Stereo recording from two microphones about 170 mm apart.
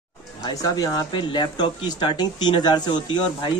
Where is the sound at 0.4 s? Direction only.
20° left (ahead or behind).